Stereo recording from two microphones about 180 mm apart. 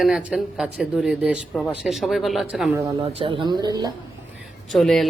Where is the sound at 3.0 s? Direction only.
30° right (ahead or behind).